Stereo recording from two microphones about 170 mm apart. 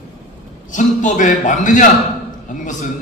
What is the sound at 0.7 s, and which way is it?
A man's voice, 45° left (ahead or behind).